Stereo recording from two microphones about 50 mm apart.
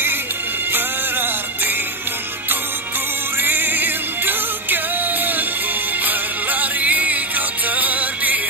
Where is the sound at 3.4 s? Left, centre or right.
Right.